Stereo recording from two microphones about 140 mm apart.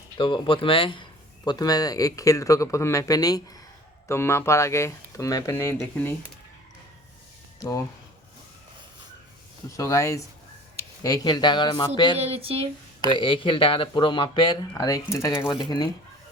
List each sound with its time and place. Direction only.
0.2 s speech: 35° left (ahead or behind)
1.5 s speech: 25° left (ahead or behind)
9.6 s speech: 20° left (ahead or behind)
12.1 s speech: 45° right (ahead or behind)
13.1 s speech: 35° left (ahead or behind)